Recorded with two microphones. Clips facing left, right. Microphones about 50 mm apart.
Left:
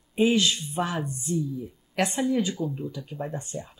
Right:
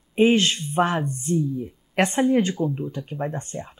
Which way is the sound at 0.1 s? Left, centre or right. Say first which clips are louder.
Right 4 dB; right.